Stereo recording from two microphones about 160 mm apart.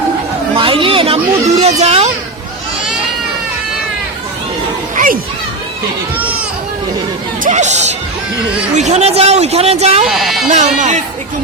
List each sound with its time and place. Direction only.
0.5 s a sound: 35° right (ahead or behind)
1.8 s a woman's voice: 40° right (ahead or behind)
4.9 s children playing: 60° right (ahead or behind)
7.4 s a woman's voice: 50° right (ahead or behind)
10.1 s speech: centre (ahead or behind)
10.5 s speech: 45° right (ahead or behind)